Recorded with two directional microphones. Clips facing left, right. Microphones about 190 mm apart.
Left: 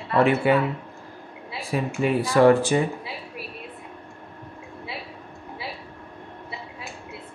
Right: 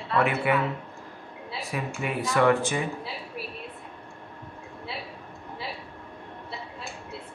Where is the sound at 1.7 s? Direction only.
30° left (ahead or behind).